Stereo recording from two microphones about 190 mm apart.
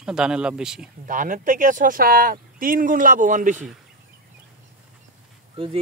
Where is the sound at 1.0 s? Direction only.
45° right (ahead or behind).